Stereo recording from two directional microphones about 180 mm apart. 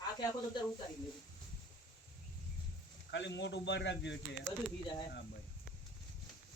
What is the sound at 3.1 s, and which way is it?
Speech, 80° left.